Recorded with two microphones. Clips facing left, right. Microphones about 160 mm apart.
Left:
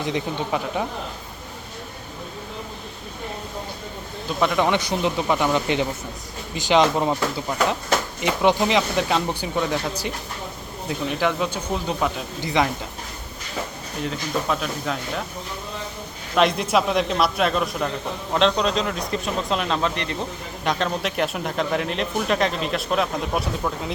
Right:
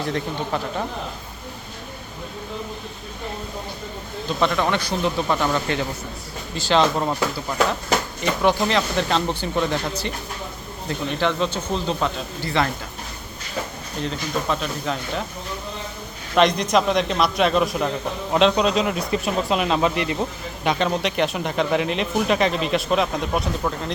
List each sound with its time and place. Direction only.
0.0 s speech: 15° left (ahead or behind)
4.4 s speech: 10° left (ahead or behind)
8.2 s speech: 15° left (ahead or behind)
14.0 s speech: 5° left (ahead or behind)
16.3 s speech: 5° left (ahead or behind)